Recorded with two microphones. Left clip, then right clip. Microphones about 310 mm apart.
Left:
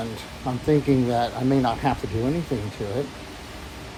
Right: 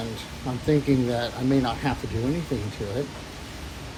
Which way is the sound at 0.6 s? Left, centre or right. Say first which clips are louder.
Left 2 dB; left.